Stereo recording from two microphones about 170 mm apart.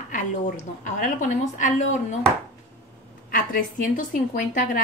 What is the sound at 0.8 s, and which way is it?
Speech, 50° left (ahead or behind).